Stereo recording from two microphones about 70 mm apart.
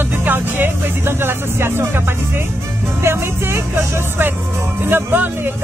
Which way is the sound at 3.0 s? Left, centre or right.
Right.